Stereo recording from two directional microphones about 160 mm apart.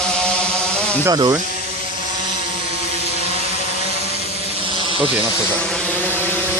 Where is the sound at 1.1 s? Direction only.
20° right (ahead or behind).